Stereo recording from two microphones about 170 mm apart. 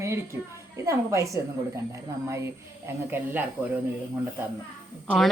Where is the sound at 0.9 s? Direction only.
20° right (ahead or behind).